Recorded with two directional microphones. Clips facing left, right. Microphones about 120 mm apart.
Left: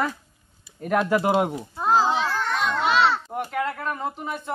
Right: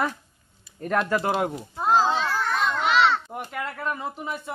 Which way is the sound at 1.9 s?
10° left (ahead or behind).